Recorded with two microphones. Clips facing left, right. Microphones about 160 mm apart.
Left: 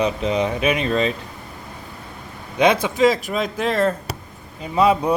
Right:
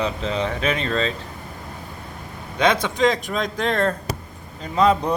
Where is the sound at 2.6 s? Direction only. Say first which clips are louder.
Left 3 dB; 10° left (ahead or behind).